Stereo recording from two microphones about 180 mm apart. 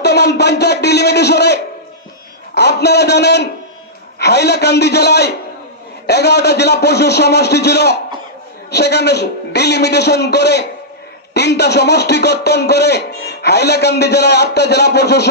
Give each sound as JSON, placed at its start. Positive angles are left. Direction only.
{"t": 0.0, "sound": "a man's voice", "side_deg": 65}